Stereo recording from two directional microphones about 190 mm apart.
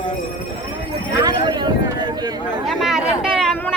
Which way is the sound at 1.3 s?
20° right (ahead or behind).